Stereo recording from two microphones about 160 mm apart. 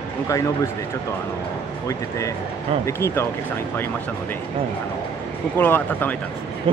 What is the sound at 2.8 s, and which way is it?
Speech, 15° left (ahead or behind).